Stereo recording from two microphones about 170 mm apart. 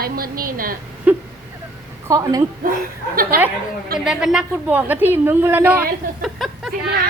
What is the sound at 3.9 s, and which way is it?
A woman's voice, 5° right (ahead or behind).